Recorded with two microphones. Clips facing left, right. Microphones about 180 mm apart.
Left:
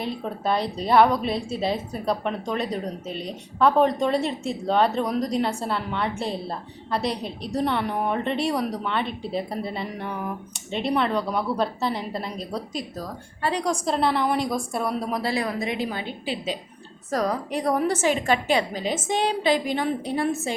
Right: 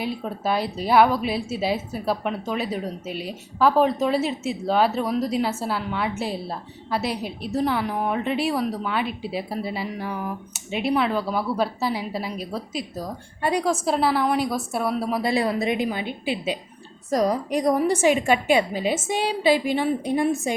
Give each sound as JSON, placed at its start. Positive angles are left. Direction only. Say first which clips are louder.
{"t": 0.0, "sound": "a woman's voice", "louder": "right 1 dB", "side_deg": -5}
{"t": 15.2, "sound": "a woman's voice", "louder": "right 4 dB", "side_deg": -25}